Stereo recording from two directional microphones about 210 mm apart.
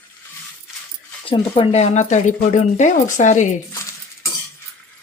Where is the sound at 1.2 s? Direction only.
25° left (ahead or behind).